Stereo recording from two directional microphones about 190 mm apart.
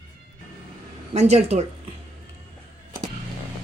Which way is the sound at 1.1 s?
35° right (ahead or behind).